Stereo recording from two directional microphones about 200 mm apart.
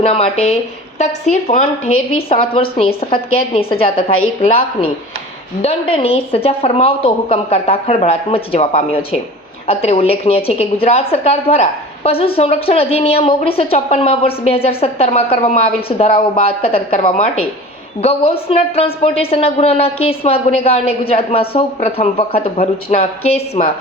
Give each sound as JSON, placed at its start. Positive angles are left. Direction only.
{"t": 0.0, "sound": "speech", "side_deg": 30}
{"t": 2.3, "sound": "a woman's voice", "side_deg": 25}
{"t": 5.6, "sound": "a woman's voice", "side_deg": 30}